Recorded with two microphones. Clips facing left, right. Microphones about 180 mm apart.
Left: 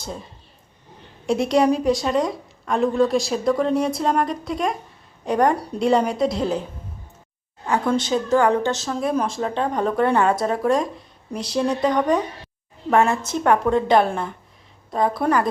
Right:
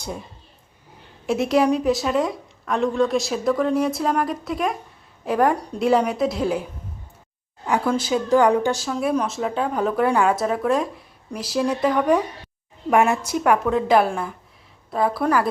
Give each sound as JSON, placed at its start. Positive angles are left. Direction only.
{"t": 1.3, "sound": "speech", "side_deg": 0}
{"t": 7.9, "sound": "a woman's voice", "side_deg": -5}